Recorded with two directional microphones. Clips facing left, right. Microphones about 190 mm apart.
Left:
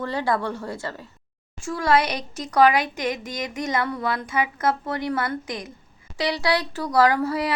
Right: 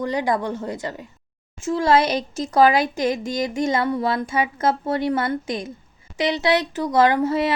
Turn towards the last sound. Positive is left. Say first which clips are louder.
# right 3 dB
turn(degrees=-25)  # may be behind; listen again after turning